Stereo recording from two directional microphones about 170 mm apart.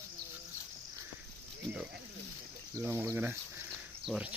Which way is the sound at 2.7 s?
15° right (ahead or behind).